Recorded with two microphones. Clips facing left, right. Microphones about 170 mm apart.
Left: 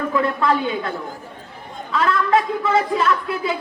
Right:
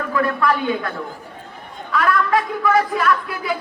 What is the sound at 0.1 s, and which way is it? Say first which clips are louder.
A man's voice: right 1 dB; 25° left (ahead or behind).